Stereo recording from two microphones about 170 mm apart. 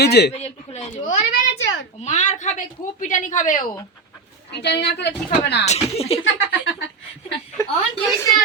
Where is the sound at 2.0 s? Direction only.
45° left (ahead or behind).